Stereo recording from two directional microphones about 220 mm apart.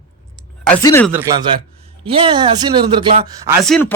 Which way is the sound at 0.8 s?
10° left (ahead or behind).